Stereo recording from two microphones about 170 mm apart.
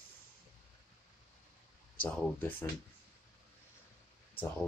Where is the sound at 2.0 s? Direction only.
10° left (ahead or behind).